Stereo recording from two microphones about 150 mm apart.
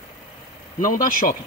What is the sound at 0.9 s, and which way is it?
Speech, 65° left (ahead or behind).